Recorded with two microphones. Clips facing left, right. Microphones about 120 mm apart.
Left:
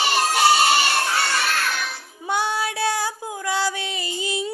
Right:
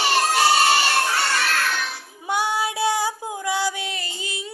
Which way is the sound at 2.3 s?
15° right (ahead or behind).